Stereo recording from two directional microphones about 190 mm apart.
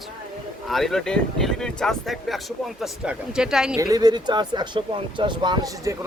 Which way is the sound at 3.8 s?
20° right (ahead or behind).